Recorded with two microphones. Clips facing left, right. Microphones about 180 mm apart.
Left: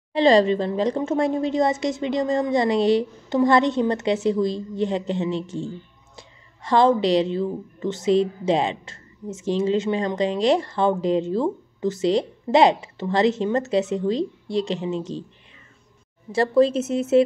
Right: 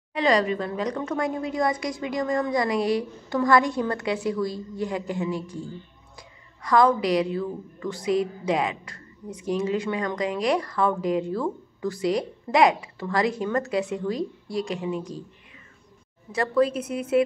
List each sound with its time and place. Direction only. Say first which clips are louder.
0.1 s a woman's voice: left 6 dB; 30° left (ahead or behind)
16.3 s a woman's voice: left 4 dB; 25° left (ahead or behind)